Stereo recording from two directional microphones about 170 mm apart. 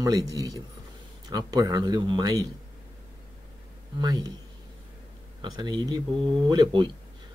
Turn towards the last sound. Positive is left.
turn(degrees=-25)  # may be behind; listen again after turning